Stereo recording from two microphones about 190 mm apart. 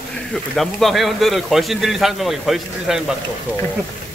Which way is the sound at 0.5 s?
Centre (ahead or behind).